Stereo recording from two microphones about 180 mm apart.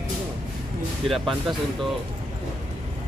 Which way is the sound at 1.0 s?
Centre (ahead or behind).